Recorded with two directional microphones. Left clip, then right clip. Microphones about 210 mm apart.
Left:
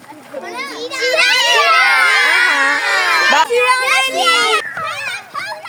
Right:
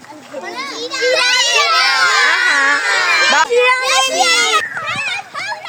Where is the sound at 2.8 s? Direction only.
50° left (ahead or behind).